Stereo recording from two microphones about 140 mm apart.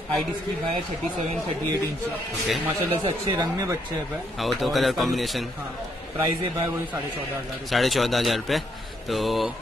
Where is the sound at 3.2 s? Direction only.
25° right (ahead or behind).